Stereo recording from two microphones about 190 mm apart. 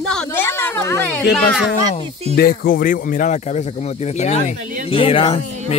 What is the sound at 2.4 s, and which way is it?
Speech, 50° left (ahead or behind).